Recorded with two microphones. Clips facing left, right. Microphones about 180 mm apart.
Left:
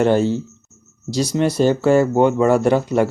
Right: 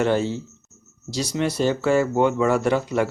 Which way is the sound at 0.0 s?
45° left (ahead or behind).